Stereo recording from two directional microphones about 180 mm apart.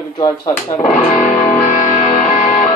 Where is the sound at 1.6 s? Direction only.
45° left (ahead or behind).